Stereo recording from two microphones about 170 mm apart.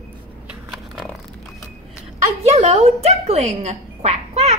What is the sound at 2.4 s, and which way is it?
A woman's voice, 40° right (ahead or behind).